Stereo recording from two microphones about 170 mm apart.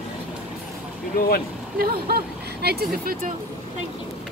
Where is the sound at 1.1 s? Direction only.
65° left (ahead or behind).